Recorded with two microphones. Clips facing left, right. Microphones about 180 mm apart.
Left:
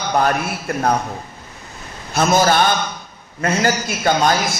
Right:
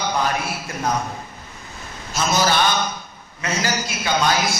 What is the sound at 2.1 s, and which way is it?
A man's voice, 55° left (ahead or behind).